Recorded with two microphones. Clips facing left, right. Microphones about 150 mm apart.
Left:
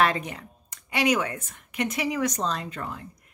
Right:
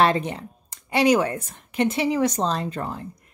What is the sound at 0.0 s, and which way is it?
Speech, 30° right (ahead or behind).